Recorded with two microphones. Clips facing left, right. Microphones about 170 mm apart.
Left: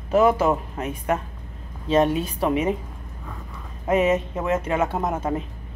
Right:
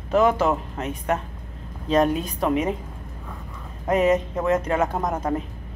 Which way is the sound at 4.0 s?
5° left (ahead or behind).